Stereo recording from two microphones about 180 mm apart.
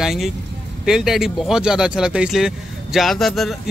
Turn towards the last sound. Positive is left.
turn(degrees=0)  # may be behind; listen again after turning